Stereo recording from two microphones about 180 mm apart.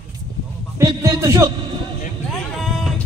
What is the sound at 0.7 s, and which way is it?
Speech, 15° right (ahead or behind).